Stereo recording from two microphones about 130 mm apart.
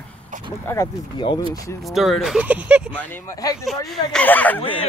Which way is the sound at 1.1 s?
35° left (ahead or behind).